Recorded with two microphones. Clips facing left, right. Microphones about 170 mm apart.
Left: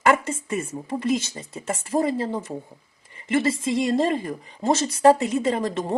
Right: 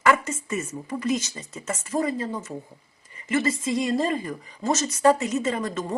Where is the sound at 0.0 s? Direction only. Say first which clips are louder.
Left 1 dB; 30° left (ahead or behind).